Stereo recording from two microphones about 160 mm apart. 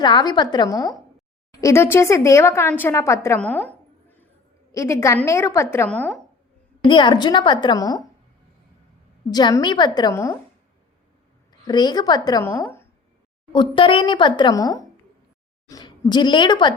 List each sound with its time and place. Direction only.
0.0 s a woman's voice: 25° left (ahead or behind); by 6.1 s 10° left (ahead or behind)
6.8 s a woman's voice: 30° left (ahead or behind)
9.3 s a woman's voice: 25° left (ahead or behind)
11.6 s a woman's voice: 25° left (ahead or behind)
13.5 s a woman's voice: 30° left (ahead or behind)